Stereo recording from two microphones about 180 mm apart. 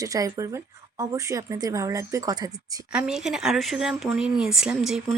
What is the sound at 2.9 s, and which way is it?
Speech, 5° right (ahead or behind).